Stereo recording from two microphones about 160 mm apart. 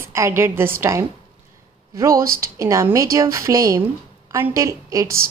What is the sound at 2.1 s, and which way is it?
Speech, 65° right (ahead or behind).